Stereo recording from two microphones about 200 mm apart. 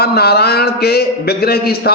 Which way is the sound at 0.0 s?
55° left (ahead or behind).